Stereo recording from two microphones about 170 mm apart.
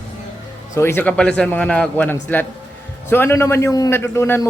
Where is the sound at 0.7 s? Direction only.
15° left (ahead or behind).